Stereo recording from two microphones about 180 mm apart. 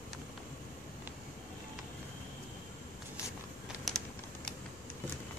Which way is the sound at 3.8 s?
5° left (ahead or behind).